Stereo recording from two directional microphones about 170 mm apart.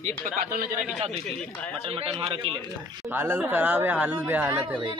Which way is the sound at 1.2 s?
Centre (ahead or behind).